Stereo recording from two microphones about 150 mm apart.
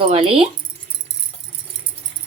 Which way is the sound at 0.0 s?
35° right (ahead or behind).